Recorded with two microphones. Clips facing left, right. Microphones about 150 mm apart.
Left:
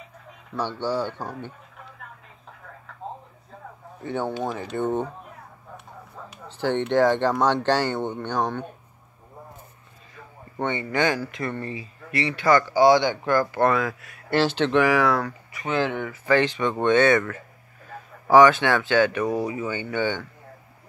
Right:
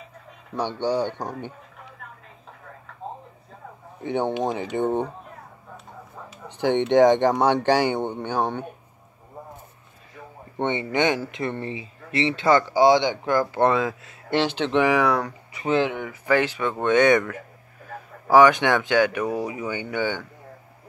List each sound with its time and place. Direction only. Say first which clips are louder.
0.6 s speech: right 2 dB; 15° right (ahead or behind)
4.0 s speech: right 3 dB; 20° right (ahead or behind)
6.4 s a sound: right 3 dB; 15° right (ahead or behind)
6.9 s speech: right 4 dB; 15° right (ahead or behind)
10.6 s speech: right 1 dB; 25° right (ahead or behind)
15.6 s speech: right 3 dB; 30° right (ahead or behind)
15.9 s speech: left 1 dB; 10° right (ahead or behind)
18.3 s speech: even; 15° right (ahead or behind)